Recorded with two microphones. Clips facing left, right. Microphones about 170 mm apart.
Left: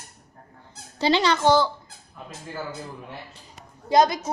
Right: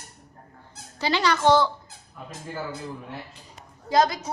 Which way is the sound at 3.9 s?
20° left (ahead or behind).